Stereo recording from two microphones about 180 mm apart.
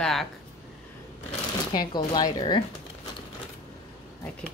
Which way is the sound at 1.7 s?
20° left (ahead or behind).